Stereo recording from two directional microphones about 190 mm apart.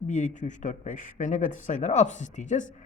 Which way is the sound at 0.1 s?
40° left (ahead or behind).